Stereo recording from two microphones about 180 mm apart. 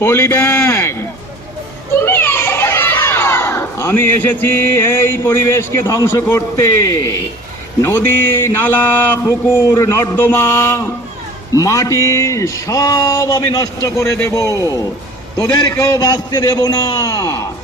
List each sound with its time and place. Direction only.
0.0 s a man's voice: 15° left (ahead or behind)